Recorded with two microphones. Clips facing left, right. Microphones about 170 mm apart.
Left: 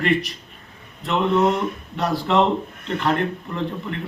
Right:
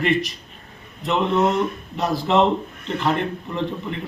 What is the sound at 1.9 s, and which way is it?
Speech, centre (ahead or behind).